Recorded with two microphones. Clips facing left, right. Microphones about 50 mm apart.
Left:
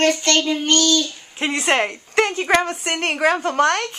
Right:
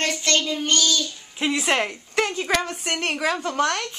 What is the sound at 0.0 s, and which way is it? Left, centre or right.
Speech, left.